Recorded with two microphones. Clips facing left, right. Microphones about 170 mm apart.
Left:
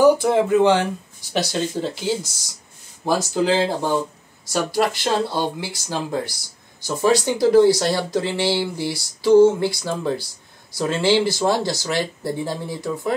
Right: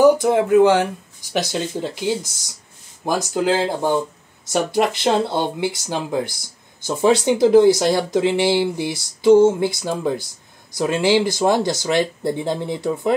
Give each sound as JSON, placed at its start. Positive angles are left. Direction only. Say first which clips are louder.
{"t": 0.0, "sound": "speech", "louder": "right 1 dB", "side_deg": -15}
{"t": 3.1, "sound": "speech", "louder": "even", "side_deg": -15}